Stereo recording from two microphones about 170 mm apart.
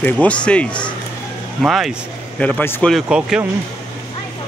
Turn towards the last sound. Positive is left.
turn(degrees=-5)  # may be behind; listen again after turning